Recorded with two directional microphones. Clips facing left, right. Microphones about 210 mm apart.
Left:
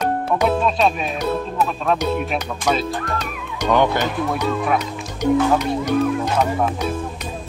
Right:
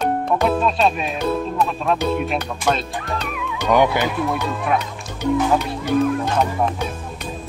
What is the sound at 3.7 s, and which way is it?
Speech, 10° right (ahead or behind).